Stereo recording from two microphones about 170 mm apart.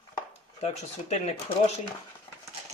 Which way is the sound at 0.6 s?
40° left (ahead or behind).